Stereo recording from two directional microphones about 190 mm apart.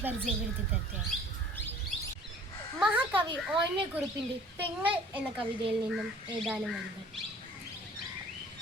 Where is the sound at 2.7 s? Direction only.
5° right (ahead or behind).